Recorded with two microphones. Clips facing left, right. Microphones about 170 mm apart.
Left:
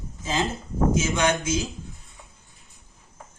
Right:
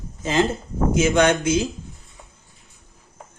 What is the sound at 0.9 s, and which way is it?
Speech, 60° right (ahead or behind).